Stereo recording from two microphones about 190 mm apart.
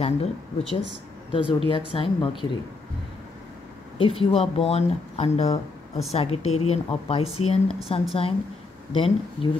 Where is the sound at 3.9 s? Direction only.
30° left (ahead or behind).